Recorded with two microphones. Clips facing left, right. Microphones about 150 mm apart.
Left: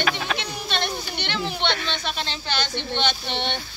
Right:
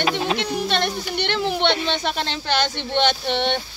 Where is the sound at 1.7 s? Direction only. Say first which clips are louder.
Right 5 dB; 20° right (ahead or behind).